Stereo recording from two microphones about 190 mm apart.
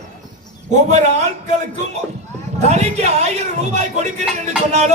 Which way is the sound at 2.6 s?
35° right (ahead or behind).